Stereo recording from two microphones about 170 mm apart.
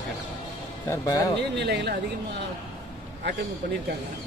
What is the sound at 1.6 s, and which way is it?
Speech, 80° right.